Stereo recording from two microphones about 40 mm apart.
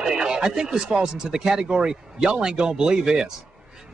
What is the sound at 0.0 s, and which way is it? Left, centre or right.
Speech, centre.